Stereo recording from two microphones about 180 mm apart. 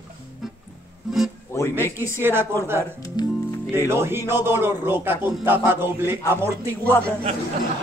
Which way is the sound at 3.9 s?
15° right (ahead or behind).